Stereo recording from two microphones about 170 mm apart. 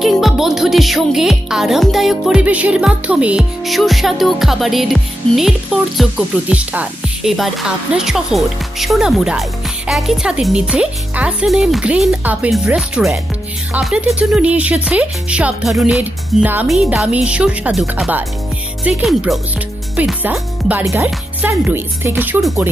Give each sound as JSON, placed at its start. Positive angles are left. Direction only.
{"t": 0.0, "sound": "speech", "side_deg": 0}